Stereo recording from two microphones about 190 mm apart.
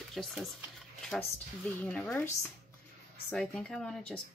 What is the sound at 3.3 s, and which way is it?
Speech, 5° left (ahead or behind).